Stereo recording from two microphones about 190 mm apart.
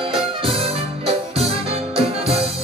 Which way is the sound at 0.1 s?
30° right (ahead or behind).